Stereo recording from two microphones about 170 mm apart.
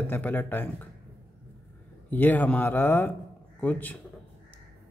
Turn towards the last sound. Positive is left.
turn(degrees=10)  # may be behind; listen again after turning